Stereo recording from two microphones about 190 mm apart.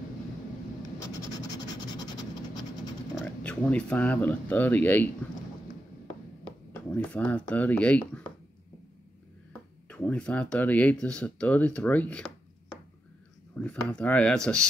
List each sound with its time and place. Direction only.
1.3 s vehicle: 20° left (ahead or behind)
3.4 s speech: 5° left (ahead or behind)
6.7 s speech: 5° left (ahead or behind)
9.8 s speech: 5° left (ahead or behind)
13.6 s speech: 5° left (ahead or behind)